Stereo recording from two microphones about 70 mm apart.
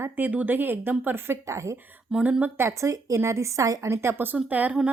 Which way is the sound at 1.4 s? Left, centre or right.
Right.